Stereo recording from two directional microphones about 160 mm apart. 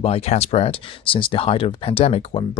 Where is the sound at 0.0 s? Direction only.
40° left (ahead or behind).